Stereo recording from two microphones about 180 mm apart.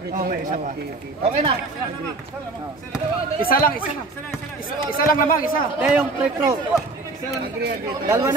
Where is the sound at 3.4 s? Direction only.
55° left (ahead or behind).